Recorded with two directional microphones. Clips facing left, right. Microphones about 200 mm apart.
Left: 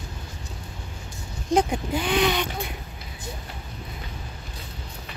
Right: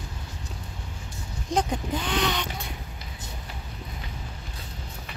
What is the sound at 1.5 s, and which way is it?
Speech, 10° left (ahead or behind).